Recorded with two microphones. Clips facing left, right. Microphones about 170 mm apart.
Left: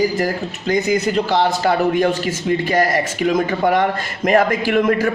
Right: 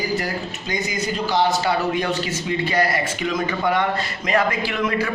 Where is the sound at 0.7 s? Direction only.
60° left (ahead or behind).